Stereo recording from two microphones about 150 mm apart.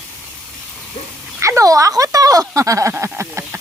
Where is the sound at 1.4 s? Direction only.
20° right (ahead or behind).